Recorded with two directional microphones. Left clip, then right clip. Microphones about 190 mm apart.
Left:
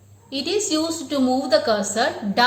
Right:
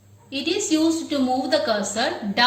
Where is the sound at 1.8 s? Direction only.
45° left (ahead or behind).